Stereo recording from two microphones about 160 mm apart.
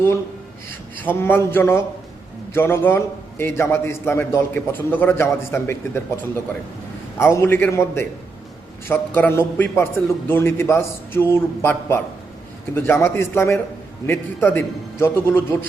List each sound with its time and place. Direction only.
1.0 s a man's voice: 10° left (ahead or behind)